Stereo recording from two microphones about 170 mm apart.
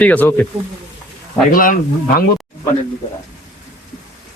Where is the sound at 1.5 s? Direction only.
55° left (ahead or behind).